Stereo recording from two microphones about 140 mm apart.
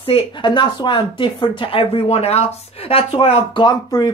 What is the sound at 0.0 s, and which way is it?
Speech, 35° left (ahead or behind).